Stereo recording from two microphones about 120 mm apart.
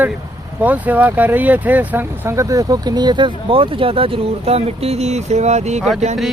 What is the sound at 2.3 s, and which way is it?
Speech, 25° right (ahead or behind).